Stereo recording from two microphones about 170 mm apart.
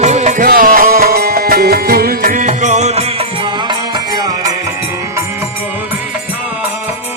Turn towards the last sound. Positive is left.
turn(degrees=-15)  # may be behind; listen again after turning